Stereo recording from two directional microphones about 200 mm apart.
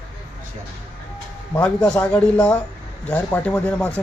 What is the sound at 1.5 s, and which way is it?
Speech, 5° left (ahead or behind).